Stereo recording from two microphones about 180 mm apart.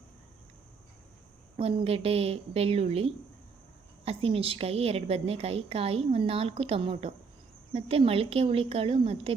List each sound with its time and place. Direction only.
1.5 s a woman's voice: 35° right (ahead or behind)